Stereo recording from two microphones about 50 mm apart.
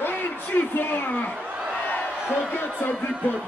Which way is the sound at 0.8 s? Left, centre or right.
Left.